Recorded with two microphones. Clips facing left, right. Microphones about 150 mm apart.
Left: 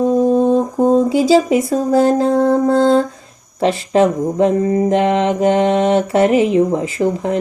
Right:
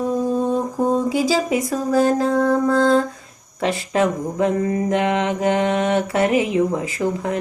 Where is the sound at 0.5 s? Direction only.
25° left (ahead or behind).